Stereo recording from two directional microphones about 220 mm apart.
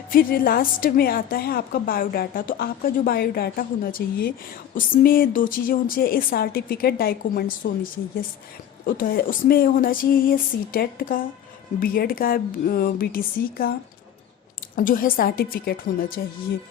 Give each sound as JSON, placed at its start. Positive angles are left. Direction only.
{"t": 0.1, "sound": "a woman's voice", "side_deg": 40}
{"t": 14.8, "sound": "a woman's voice", "side_deg": 40}